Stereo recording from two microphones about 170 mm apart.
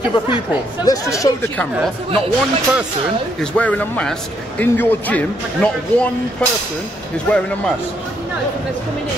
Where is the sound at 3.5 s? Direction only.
10° left (ahead or behind).